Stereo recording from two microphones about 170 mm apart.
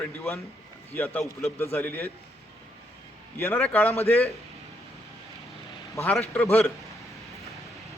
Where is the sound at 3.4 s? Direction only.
15° left (ahead or behind).